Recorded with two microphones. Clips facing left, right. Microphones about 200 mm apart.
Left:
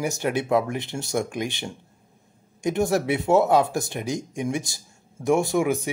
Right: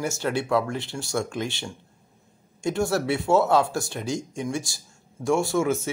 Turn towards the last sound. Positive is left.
turn(degrees=15)  # may be behind; listen again after turning